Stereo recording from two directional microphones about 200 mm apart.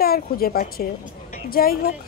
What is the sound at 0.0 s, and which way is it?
A woman's voice, 50° left (ahead or behind).